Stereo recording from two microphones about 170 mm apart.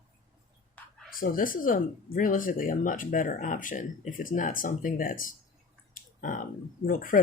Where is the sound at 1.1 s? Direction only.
55° left (ahead or behind).